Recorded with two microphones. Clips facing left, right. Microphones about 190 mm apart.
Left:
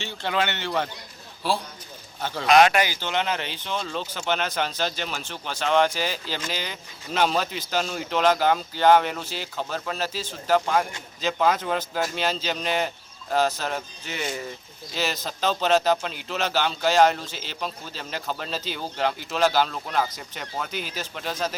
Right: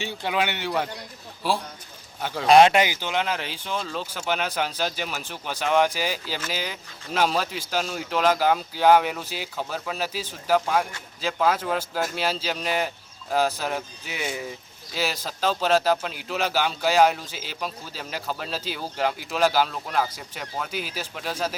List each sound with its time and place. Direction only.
0.0 s speech: 10° right (ahead or behind)
2.5 s speech: 25° right (ahead or behind)
3.1 s speech: 5° right (ahead or behind)